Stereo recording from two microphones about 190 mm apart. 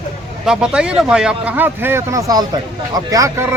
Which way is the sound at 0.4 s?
5° right (ahead or behind).